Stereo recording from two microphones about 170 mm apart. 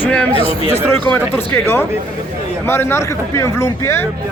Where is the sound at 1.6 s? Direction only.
15° left (ahead or behind).